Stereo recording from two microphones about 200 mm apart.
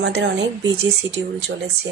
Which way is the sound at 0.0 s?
60° right (ahead or behind).